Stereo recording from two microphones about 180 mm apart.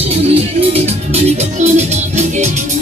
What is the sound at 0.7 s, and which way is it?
Music, 35° right (ahead or behind).